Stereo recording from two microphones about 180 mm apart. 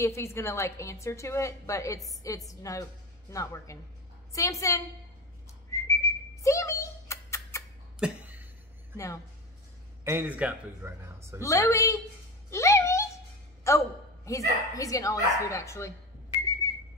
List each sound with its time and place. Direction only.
0.0 s a woman's voice: 15° left (ahead or behind)
5.7 s whistling: 15° left (ahead or behind)
8.0 s a sound: 10° right (ahead or behind)
8.9 s speech: 15° left (ahead or behind)
10.0 s a man's voice: 10° right (ahead or behind)
11.4 s speech: 15° left (ahead or behind)
16.6 s whistling: 15° left (ahead or behind)